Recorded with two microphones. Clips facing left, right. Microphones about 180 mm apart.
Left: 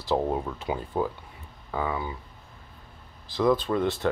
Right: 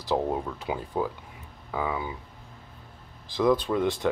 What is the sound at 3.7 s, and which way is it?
Speech, 10° right (ahead or behind).